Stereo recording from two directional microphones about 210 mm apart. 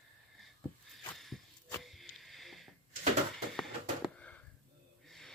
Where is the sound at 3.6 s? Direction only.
5° left (ahead or behind).